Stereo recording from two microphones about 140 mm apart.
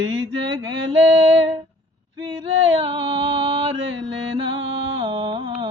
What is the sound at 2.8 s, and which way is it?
Mantra, 40° right (ahead or behind).